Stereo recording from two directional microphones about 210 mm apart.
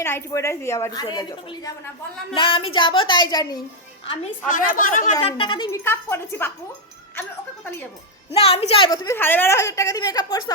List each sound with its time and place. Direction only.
0.0 s a woman's voice: 15° left (ahead or behind)
4.4 s a woman's voice: 40° left (ahead or behind)
5.2 s a woman's voice: 25° left (ahead or behind)
8.3 s a woman's voice: 30° left (ahead or behind)